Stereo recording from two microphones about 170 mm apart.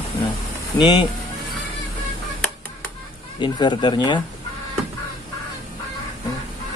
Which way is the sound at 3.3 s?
25° left (ahead or behind).